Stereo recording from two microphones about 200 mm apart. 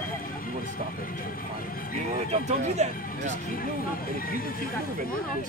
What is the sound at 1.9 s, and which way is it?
Speech, 35° right (ahead or behind).